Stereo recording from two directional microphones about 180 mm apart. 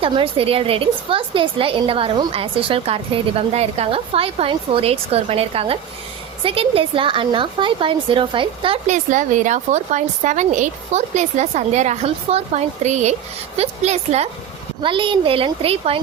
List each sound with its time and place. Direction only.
0.0 s a woman's voice: 30° right (ahead or behind)
8.9 s a woman's voice: 45° right (ahead or behind)